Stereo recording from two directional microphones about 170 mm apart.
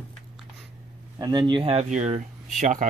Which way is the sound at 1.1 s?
20° right (ahead or behind).